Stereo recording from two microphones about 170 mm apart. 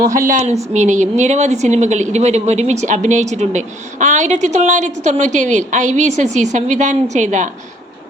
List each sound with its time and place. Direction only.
0.7 s a woman's voice: 45° right (ahead or behind)